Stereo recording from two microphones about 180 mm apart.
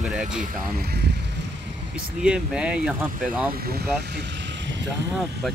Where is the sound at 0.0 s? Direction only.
5° right (ahead or behind).